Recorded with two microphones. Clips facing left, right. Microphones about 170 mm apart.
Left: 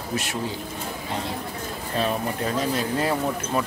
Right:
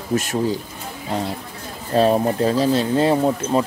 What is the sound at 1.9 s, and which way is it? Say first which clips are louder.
Speech: right 10 dB; 35° right (ahead or behind).